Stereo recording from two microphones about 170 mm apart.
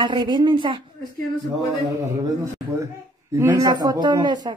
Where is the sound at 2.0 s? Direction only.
20° right (ahead or behind).